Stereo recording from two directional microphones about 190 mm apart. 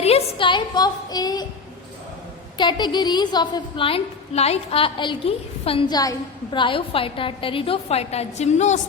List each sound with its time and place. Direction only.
0.0 s a woman's voice: 30° left (ahead or behind)
2.6 s a woman's voice: 25° left (ahead or behind)